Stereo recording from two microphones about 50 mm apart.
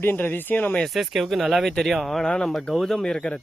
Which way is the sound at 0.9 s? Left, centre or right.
Centre.